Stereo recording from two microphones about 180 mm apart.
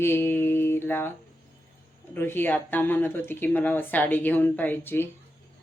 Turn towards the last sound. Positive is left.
turn(degrees=10)  # may be behind; listen again after turning